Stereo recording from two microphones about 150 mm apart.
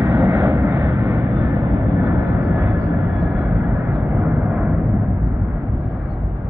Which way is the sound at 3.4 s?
10° right (ahead or behind).